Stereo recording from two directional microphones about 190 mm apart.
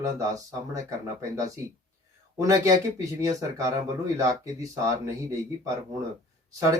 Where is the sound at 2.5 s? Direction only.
15° right (ahead or behind).